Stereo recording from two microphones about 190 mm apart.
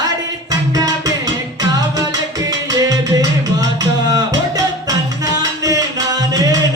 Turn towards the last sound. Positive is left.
turn(degrees=-20)  # may be behind; listen again after turning